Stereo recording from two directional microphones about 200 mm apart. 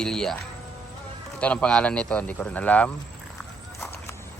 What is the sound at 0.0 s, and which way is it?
Speech, 5° left (ahead or behind).